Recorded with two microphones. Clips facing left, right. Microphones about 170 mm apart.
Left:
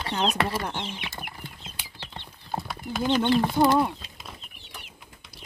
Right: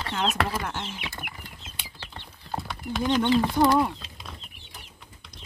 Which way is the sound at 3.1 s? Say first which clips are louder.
Even; 10° left (ahead or behind).